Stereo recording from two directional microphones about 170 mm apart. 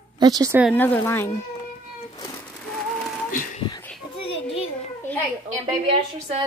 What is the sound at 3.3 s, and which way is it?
Speech, 50° left (ahead or behind).